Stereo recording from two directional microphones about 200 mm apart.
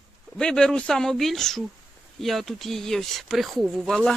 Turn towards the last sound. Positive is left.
turn(degrees=0)  # may be behind; listen again after turning